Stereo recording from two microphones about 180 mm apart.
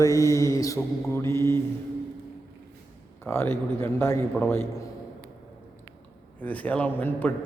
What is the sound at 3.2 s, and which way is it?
A man's voice, 10° left (ahead or behind).